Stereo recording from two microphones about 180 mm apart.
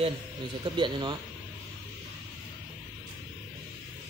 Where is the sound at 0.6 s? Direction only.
25° right (ahead or behind).